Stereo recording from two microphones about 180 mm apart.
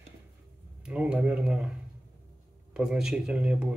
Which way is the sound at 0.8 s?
5° right (ahead or behind).